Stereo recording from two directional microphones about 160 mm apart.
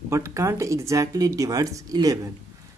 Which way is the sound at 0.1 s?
20° right (ahead or behind).